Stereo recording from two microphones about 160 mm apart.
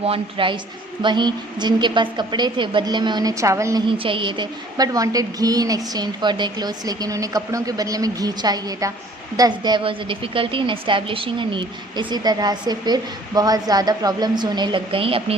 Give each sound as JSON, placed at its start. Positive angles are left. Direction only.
{"t": 0.0, "sound": "a woman's voice", "side_deg": -35}
{"t": 3.8, "sound": "a woman's voice", "side_deg": -35}